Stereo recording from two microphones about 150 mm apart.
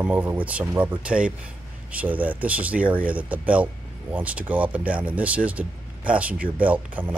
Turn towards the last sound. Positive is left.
turn(degrees=-10)  # may be behind; listen again after turning